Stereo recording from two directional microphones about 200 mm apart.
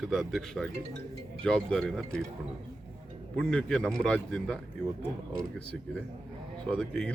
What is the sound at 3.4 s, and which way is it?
Speech, 5° left (ahead or behind).